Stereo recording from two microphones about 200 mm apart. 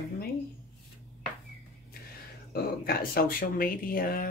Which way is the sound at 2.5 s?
50° left (ahead or behind).